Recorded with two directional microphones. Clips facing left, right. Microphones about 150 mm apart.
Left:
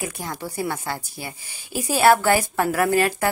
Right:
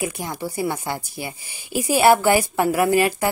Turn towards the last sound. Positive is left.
turn(degrees=-10)  # may be behind; listen again after turning